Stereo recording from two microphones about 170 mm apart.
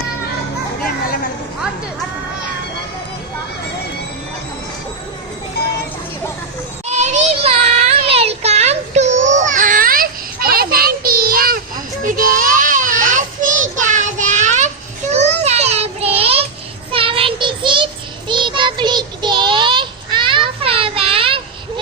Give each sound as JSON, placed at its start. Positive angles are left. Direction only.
{"t": 0.9, "sound": "a sound", "side_deg": 60}
{"t": 6.8, "sound": "child singing", "side_deg": -40}
{"t": 12.0, "sound": "children playing", "side_deg": -55}
{"t": 15.1, "sound": "child singing", "side_deg": -40}